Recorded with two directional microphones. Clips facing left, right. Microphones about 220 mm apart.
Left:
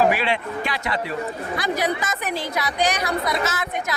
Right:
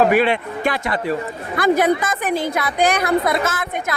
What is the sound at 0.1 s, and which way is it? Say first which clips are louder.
Speech: right 6 dB; 50° right (ahead or behind).